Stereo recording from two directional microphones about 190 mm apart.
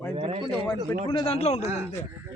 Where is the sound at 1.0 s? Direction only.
30° left (ahead or behind).